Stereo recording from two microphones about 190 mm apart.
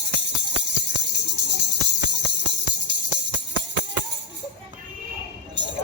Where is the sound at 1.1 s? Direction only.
65° right (ahead or behind).